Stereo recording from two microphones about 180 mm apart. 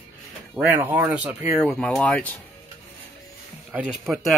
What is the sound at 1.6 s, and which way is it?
Speech, 5° left (ahead or behind).